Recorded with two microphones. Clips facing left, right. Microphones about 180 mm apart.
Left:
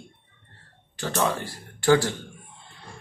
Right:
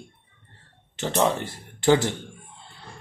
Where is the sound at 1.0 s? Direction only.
20° right (ahead or behind).